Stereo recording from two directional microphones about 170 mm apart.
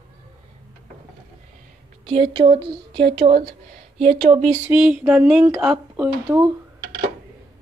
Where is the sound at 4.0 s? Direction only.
45° right (ahead or behind).